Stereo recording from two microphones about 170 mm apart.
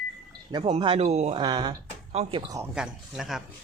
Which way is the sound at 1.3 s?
30° right (ahead or behind).